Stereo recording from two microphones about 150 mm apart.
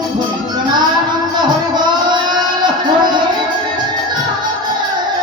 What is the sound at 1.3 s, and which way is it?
Music, 30° right (ahead or behind).